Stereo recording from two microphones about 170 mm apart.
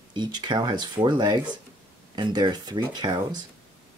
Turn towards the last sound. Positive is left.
turn(degrees=-25)  # may be behind; listen again after turning